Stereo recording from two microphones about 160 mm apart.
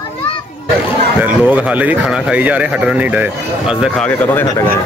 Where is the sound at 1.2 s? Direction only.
10° right (ahead or behind).